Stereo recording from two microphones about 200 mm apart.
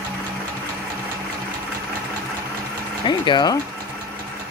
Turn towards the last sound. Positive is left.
turn(degrees=20)  # may be behind; listen again after turning